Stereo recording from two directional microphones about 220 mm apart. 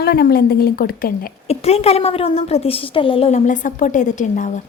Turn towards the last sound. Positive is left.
turn(degrees=35)  # may be behind; listen again after turning